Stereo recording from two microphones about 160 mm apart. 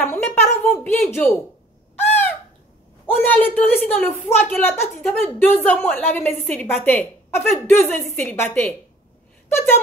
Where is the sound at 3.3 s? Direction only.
10° left (ahead or behind).